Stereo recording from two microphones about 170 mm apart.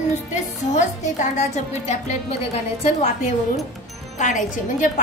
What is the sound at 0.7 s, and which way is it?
A woman's voice, 45° left (ahead or behind).